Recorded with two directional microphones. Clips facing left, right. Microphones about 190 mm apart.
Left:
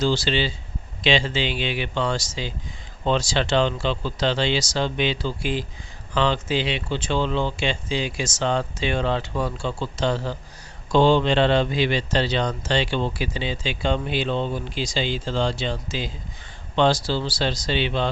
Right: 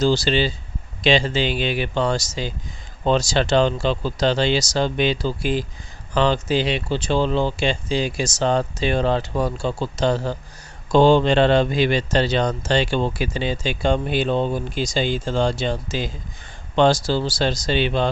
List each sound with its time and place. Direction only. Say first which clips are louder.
0.0 s speech: right 4 dB; 40° right (ahead or behind)